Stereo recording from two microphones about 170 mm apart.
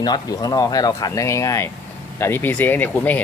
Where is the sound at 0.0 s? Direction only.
25° left (ahead or behind).